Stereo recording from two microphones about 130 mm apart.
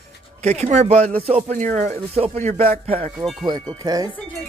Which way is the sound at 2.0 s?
50° right (ahead or behind).